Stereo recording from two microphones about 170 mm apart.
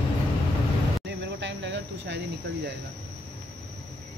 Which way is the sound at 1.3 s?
90° right.